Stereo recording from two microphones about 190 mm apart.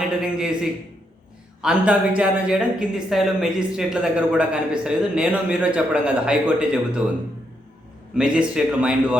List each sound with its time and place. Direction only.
0.2 s speech: 5° right (ahead or behind)
8.1 s speech: 5° right (ahead or behind)